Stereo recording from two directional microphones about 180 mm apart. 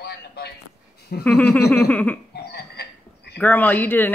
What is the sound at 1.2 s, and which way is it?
Speech, 10° left (ahead or behind).